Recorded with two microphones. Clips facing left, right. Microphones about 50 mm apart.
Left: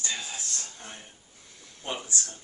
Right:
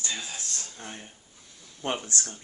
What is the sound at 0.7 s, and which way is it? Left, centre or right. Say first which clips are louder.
Speech: right 3 dB; centre.